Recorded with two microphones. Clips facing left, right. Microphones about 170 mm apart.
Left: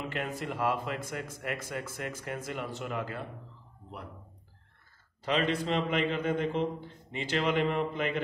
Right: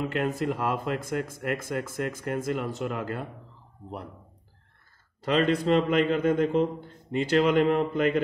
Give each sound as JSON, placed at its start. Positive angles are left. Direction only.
{"t": 0.1, "sound": "speech", "side_deg": -45}
{"t": 5.2, "sound": "speech", "side_deg": -45}